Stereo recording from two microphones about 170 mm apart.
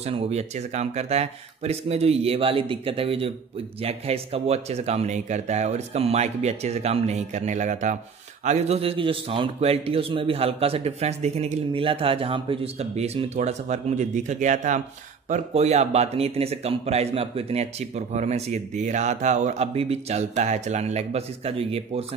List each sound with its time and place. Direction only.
0.0 s speech: 40° right (ahead or behind)